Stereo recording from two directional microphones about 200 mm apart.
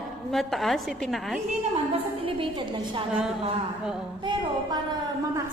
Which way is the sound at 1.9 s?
25° right (ahead or behind).